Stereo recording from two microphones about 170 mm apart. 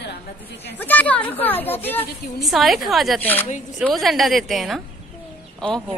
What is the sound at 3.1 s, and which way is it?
Speech, 10° left (ahead or behind).